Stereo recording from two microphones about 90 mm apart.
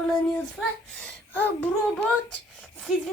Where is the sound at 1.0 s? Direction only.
20° left (ahead or behind).